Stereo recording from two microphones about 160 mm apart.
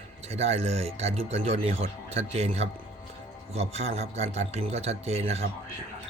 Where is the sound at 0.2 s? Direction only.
40° right (ahead or behind).